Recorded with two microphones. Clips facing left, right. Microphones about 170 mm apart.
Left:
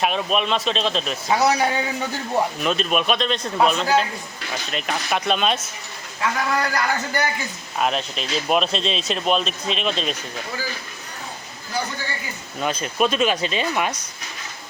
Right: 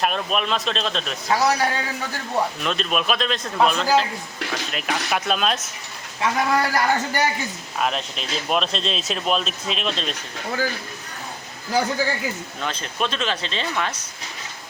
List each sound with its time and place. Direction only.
0.0 s speech: centre (ahead or behind)
1.3 s a man's voice: 20° left (ahead or behind)
2.6 s speech: centre (ahead or behind)
6.2 s a man's voice: 25° right (ahead or behind)
7.8 s speech: centre (ahead or behind)
12.5 s speech: 10° left (ahead or behind)